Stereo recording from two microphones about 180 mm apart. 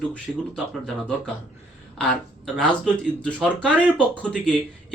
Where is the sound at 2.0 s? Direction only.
5° left (ahead or behind).